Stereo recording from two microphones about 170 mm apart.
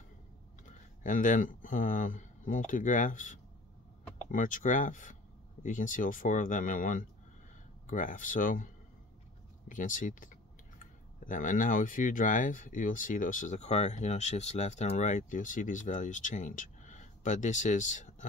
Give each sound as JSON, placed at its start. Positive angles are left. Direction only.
{"t": 1.0, "sound": "speech", "side_deg": 50}
{"t": 9.7, "sound": "speech", "side_deg": 50}